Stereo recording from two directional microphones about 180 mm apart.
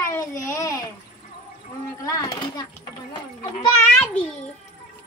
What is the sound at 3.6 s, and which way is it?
Speech, 5° left (ahead or behind).